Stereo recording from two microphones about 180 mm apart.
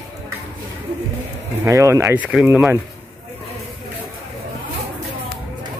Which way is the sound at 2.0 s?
5° right (ahead or behind).